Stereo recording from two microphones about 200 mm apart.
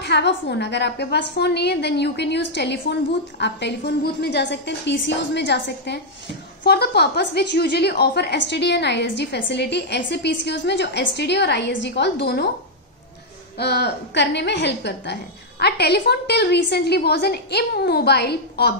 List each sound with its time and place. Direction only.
0.0 s a woman's voice: 60° left (ahead or behind)
13.6 s a woman's voice: 55° left (ahead or behind)